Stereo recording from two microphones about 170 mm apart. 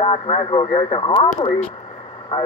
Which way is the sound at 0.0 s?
35° left (ahead or behind).